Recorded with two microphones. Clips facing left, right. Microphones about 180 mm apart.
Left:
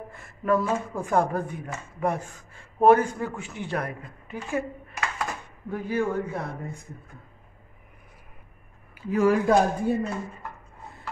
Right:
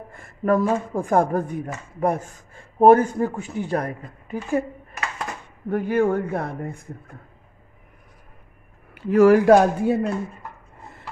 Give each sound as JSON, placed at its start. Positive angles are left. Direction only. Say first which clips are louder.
{"t": 0.1, "sound": "speech", "louder": "right 4 dB", "side_deg": -45}
{"t": 5.7, "sound": "speech", "louder": "right 7 dB", "side_deg": -60}
{"t": 8.9, "sound": "speech", "louder": "right 7 dB", "side_deg": -70}